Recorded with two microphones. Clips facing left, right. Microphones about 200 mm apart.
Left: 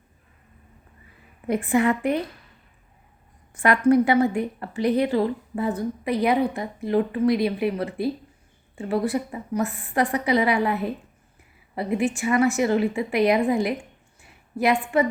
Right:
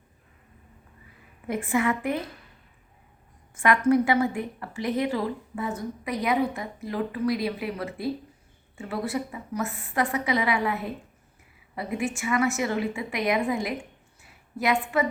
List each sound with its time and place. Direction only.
1.5 s a woman's voice: 35° left (ahead or behind)
3.6 s a woman's voice: 30° left (ahead or behind)